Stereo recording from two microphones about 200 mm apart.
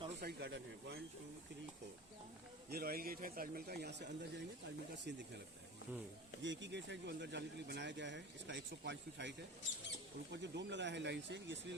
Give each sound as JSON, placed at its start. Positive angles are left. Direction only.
{"t": 0.2, "sound": "speech", "side_deg": -55}
{"t": 2.6, "sound": "speech", "side_deg": -50}
{"t": 6.4, "sound": "speech", "side_deg": -65}
{"t": 10.3, "sound": "speech", "side_deg": -60}